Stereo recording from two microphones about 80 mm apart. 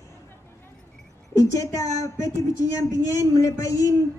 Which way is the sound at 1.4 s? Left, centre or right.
Left.